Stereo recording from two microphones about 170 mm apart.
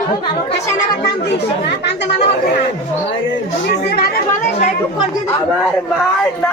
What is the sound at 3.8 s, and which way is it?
Speech, 70° left (ahead or behind).